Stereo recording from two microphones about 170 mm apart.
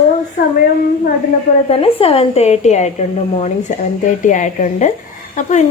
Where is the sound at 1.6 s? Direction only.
35° left (ahead or behind).